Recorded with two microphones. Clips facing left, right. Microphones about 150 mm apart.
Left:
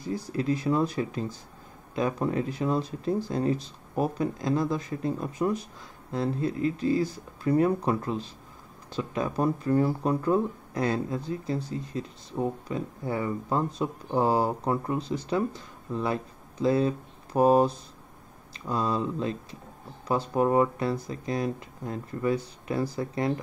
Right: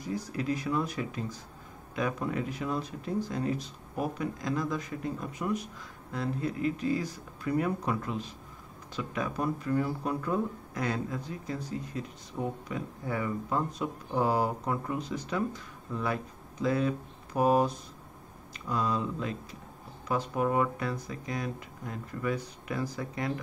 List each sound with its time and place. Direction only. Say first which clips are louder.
0.0 s speech: left 4 dB; 30° left (ahead or behind)